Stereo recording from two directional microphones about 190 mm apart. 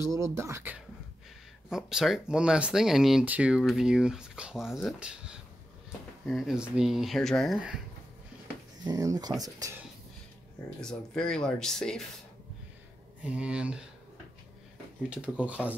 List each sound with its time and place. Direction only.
0.1 s speech: 15° right (ahead or behind)
8.8 s speech: 20° right (ahead or behind)
10.8 s speech: 5° left (ahead or behind)
13.2 s speech: 5° right (ahead or behind)
15.0 s speech: 5° right (ahead or behind)